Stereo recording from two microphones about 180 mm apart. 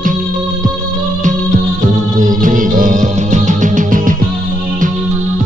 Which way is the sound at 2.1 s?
45° right (ahead or behind).